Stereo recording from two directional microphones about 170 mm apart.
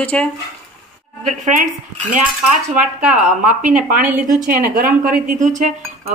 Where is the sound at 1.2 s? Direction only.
45° right (ahead or behind).